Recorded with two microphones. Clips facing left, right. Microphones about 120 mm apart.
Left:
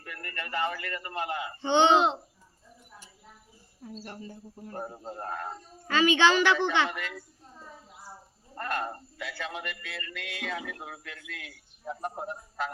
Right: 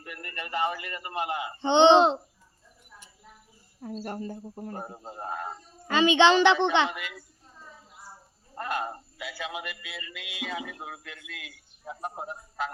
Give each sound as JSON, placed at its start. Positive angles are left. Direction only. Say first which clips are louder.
{"t": 0.0, "sound": "a man's voice", "louder": "even", "side_deg": -20}
{"t": 3.8, "sound": "speech", "louder": "right 7 dB", "side_deg": -50}
{"t": 4.8, "sound": "speech", "louder": "left 1 dB", "side_deg": -10}
{"t": 5.9, "sound": "a man's voice", "louder": "right 3 dB", "side_deg": -20}
{"t": 6.9, "sound": "speech", "louder": "left 2 dB", "side_deg": -5}
{"t": 8.5, "sound": "speech", "louder": "right 1 dB", "side_deg": -5}